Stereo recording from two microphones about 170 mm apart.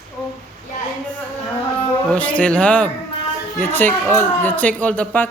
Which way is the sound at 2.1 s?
10° left (ahead or behind).